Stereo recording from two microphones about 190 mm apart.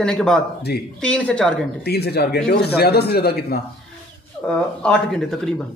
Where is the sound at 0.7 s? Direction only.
55° left (ahead or behind).